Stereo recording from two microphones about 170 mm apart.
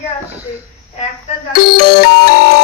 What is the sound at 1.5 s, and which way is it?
Music, 70° left (ahead or behind).